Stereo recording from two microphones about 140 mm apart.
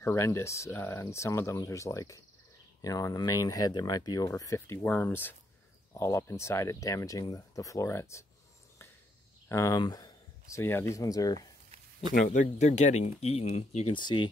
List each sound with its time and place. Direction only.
0.0 s speech: 20° left (ahead or behind)
9.5 s a sound: 20° left (ahead or behind)
10.6 s speech: 15° left (ahead or behind)
12.1 s speech: 65° left (ahead or behind); by 13.9 s 50° left (ahead or behind)
13.9 s speech: 35° left (ahead or behind)